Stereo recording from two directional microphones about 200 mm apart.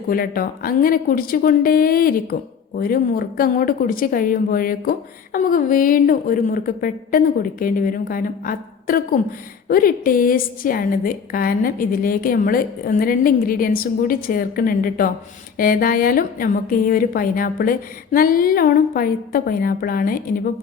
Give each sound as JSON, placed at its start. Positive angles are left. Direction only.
{"t": 0.1, "sound": "a woman's voice", "side_deg": 45}